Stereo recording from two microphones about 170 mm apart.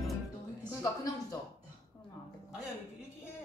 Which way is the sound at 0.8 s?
20° left (ahead or behind).